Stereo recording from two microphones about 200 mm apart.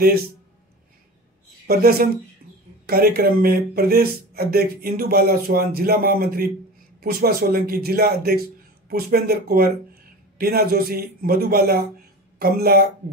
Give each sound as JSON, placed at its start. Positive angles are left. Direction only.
{"t": 1.7, "sound": "speech", "side_deg": -50}